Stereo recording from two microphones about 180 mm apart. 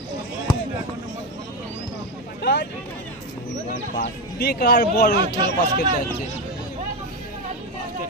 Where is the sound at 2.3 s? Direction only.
70° left (ahead or behind).